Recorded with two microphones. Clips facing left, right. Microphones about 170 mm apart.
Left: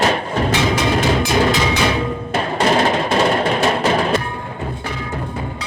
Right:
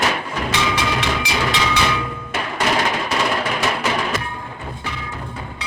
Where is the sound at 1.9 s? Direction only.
35° left (ahead or behind).